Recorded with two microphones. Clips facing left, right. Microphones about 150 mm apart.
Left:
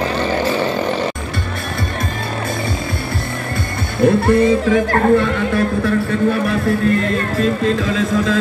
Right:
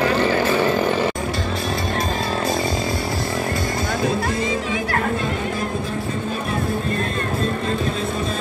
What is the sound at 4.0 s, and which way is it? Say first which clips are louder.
Speech: left 13 dB; 60° left (ahead or behind).